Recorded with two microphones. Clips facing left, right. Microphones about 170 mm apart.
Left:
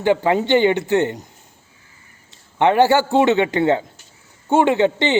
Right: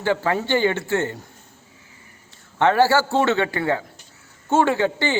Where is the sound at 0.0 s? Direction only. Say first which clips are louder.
Left 5 dB; 15° left (ahead or behind).